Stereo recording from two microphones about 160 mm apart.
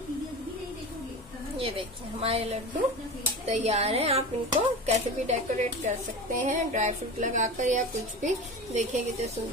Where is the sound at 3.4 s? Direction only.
40° right (ahead or behind).